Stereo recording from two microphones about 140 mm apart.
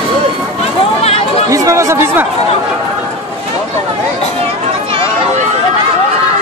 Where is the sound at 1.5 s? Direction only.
25° right (ahead or behind).